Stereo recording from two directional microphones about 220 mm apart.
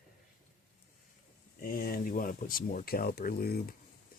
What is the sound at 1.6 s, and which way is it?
Speech, 40° left (ahead or behind).